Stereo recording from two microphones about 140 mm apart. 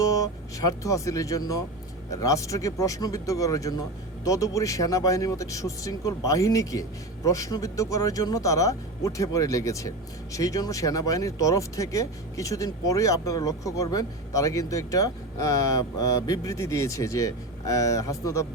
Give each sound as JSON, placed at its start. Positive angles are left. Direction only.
{"t": 0.0, "sound": "speech", "side_deg": 25}